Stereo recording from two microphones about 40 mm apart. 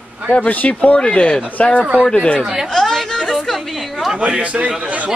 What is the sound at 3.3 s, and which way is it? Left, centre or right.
Chatter, centre.